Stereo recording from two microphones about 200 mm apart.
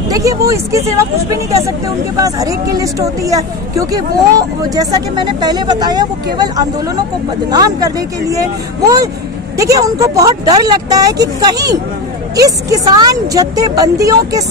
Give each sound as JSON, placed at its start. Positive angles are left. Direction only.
{"t": 0.1, "sound": "a sound", "side_deg": -15}
{"t": 0.5, "sound": "speech", "side_deg": -15}
{"t": 2.1, "sound": "speech", "side_deg": -15}